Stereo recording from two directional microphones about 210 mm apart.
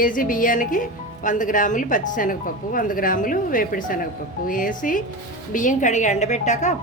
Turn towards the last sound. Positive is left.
turn(degrees=35)  # may be behind; listen again after turning